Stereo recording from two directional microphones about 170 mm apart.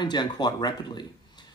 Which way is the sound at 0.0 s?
25° left (ahead or behind).